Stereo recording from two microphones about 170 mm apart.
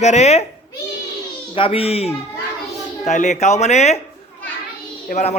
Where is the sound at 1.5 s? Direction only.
35° left (ahead or behind).